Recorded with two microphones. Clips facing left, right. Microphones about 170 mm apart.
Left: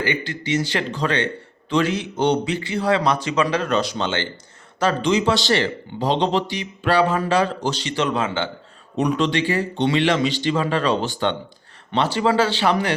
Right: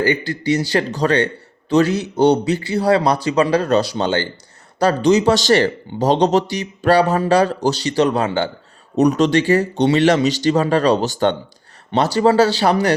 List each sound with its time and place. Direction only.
0.0 s speech: 40° right (ahead or behind)